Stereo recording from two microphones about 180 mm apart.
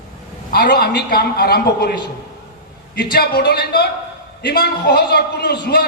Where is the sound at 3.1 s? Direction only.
60° left (ahead or behind).